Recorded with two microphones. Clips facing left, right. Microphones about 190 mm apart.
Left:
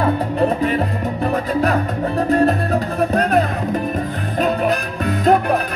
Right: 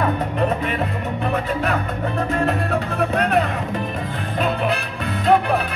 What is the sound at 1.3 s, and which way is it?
Music, 35° left (ahead or behind).